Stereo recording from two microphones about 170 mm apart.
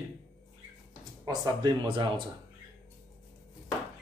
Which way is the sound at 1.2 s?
20° right (ahead or behind).